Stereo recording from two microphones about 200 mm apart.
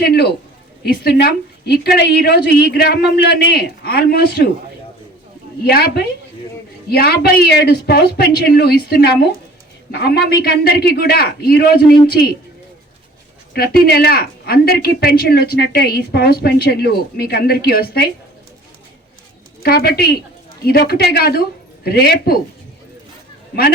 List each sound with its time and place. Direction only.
0.0 s speech: 55° left (ahead or behind)
5.6 s speech: 50° left (ahead or behind)
13.5 s speech: 50° left (ahead or behind)
19.6 s speech: 50° left (ahead or behind)